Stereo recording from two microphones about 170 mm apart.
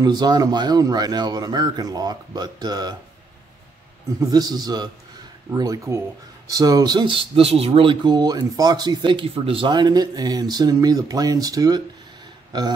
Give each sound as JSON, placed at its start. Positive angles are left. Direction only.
{"t": 0.0, "sound": "speech", "side_deg": -25}
{"t": 4.2, "sound": "speech", "side_deg": -25}